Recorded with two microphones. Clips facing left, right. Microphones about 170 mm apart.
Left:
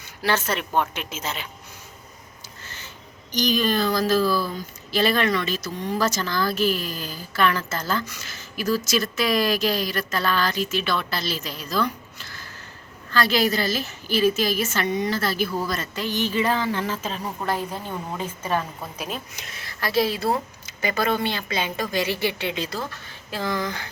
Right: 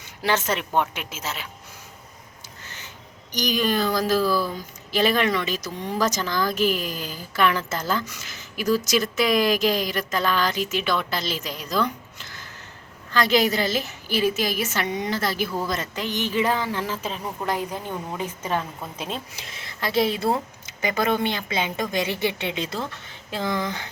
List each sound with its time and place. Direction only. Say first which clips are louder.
0.2 s speech: even; 20° right (ahead or behind)
2.6 s a sound: left 1 dB; 15° right (ahead or behind)
3.3 s a woman's voice: left 1 dB; 15° right (ahead or behind)